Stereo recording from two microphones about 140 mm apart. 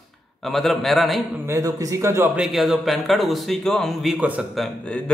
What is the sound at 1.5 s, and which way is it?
Speech, 20° right (ahead or behind).